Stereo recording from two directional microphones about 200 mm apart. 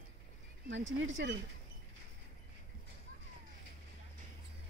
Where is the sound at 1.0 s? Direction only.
60° right (ahead or behind).